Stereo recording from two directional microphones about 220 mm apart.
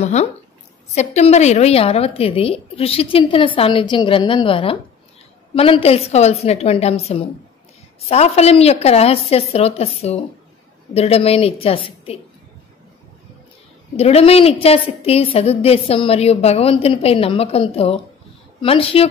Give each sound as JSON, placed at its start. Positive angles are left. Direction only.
{"t": 0.0, "sound": "a woman's voice", "side_deg": 30}
{"t": 13.9, "sound": "a woman's voice", "side_deg": 30}